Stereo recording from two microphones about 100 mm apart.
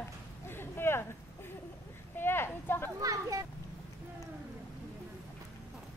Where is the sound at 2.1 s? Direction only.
20° left (ahead or behind).